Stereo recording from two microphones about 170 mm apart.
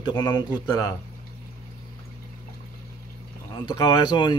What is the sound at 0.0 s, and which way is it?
Speech, 25° left (ahead or behind).